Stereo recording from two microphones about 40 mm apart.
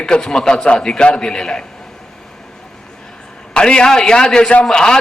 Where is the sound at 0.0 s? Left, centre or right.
Centre.